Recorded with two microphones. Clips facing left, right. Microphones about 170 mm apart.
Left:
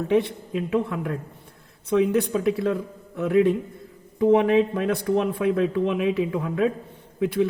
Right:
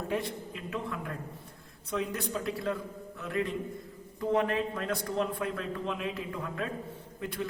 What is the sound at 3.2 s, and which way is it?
Speech, 65° left (ahead or behind).